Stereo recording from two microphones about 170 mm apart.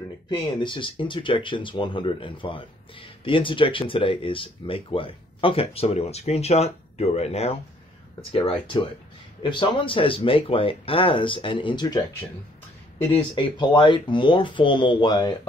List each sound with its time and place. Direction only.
0.3 s speech: 30° left (ahead or behind)
13.1 s speech: 30° left (ahead or behind)